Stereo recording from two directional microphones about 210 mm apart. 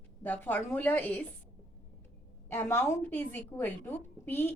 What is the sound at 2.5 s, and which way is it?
A woman's voice, 10° left (ahead or behind).